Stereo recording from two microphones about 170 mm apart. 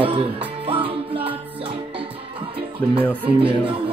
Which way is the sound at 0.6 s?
35° right (ahead or behind).